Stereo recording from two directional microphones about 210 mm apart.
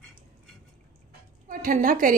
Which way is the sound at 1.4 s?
40° right (ahead or behind).